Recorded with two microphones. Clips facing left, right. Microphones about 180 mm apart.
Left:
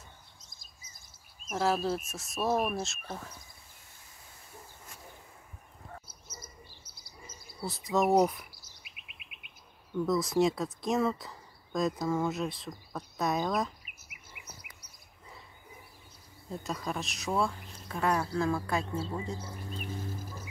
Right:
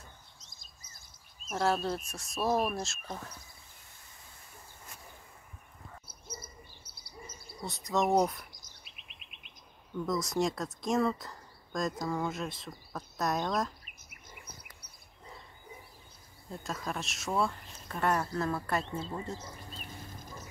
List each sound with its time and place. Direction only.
1.5 s speech: 5° left (ahead or behind)
6.2 s bird: 30° right (ahead or behind)
6.7 s bird: 55° right (ahead or behind)
7.6 s chirp: centre (ahead or behind)
10.0 s speech: centre (ahead or behind)
14.7 s bird: 5° left (ahead or behind)
16.4 s speech: centre (ahead or behind)